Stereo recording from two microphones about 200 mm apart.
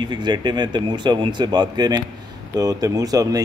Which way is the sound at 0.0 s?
20° right (ahead or behind).